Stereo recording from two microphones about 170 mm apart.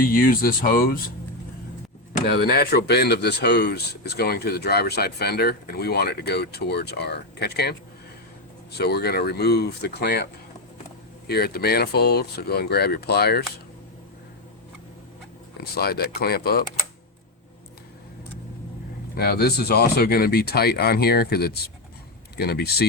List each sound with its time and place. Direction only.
0.0 s speech: 55° left (ahead or behind)
2.2 s speech: 65° left (ahead or behind)
11.3 s speech: 70° left (ahead or behind)
15.6 s speech: 65° left (ahead or behind)
19.1 s speech: 65° left (ahead or behind)